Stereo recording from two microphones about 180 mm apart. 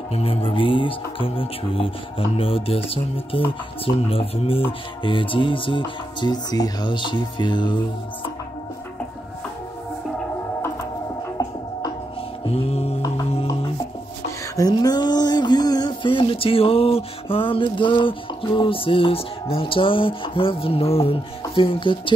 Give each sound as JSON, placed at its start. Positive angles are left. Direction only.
{"t": 0.1, "sound": "speech", "side_deg": 30}
{"t": 12.4, "sound": "mantra", "side_deg": 35}
{"t": 13.3, "sound": "music", "side_deg": 30}
{"t": 14.6, "sound": "a sound", "side_deg": 20}